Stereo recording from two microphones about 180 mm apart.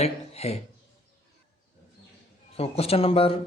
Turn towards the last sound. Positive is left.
turn(degrees=30)  # may be behind; listen again after turning